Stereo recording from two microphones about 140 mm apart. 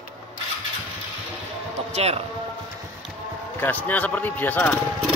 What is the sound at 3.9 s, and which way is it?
Speech, 10° left (ahead or behind).